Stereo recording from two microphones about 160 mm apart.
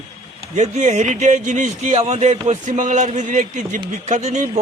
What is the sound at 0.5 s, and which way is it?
Speech, 45° right (ahead or behind).